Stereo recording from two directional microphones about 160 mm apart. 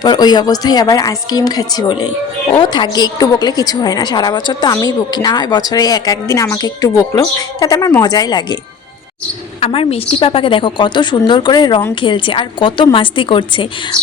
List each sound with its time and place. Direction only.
0.0 s a woman's voice: 25° left (ahead or behind)
9.6 s a woman's voice: 35° left (ahead or behind)